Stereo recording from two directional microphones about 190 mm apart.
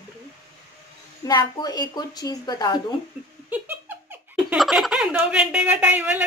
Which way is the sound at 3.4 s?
10° right (ahead or behind).